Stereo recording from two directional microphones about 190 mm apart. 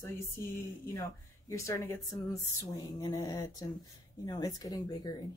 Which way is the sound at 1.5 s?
15° left (ahead or behind).